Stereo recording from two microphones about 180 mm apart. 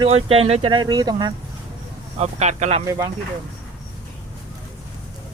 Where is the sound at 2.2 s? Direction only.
40° right (ahead or behind).